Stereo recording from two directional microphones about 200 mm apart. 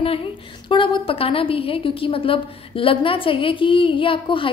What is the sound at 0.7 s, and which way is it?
A woman's voice, 25° left (ahead or behind).